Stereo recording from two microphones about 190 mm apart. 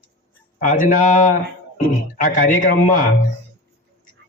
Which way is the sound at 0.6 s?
45° left (ahead or behind).